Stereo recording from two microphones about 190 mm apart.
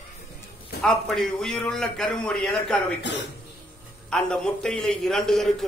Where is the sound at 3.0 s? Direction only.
65° left (ahead or behind).